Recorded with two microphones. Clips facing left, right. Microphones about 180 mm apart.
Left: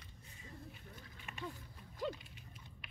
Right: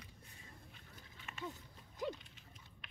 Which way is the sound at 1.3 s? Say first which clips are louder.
Left 1 dB; 15° left (ahead or behind).